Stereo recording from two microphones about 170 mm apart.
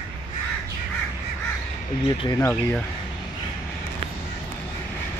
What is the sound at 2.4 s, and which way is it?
Speech, 15° left (ahead or behind).